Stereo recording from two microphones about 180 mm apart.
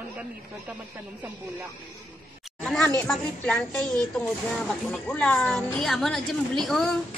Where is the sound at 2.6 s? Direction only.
5° left (ahead or behind).